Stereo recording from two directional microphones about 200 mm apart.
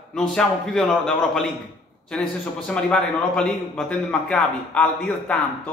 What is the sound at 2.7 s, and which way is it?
A man's voice, 5° left (ahead or behind).